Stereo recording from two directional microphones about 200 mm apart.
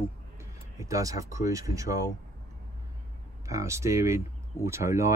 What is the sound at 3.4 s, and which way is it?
Speech, 15° right (ahead or behind).